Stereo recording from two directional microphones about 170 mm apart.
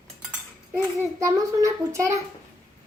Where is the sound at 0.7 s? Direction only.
20° right (ahead or behind).